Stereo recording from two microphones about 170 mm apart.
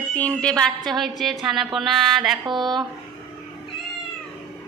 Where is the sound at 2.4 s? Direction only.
25° right (ahead or behind).